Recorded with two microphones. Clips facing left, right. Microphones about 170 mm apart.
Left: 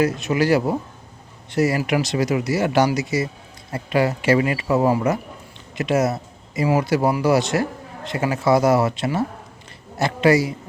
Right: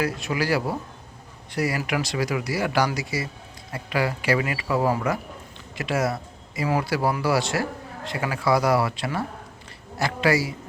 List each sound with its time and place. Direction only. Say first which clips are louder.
0.0 s a man's voice: left 6 dB; 20° left (ahead or behind)